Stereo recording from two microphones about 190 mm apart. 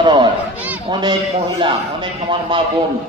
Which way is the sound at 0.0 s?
25° right (ahead or behind).